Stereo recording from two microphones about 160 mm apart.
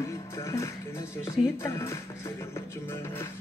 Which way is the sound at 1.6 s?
15° left (ahead or behind).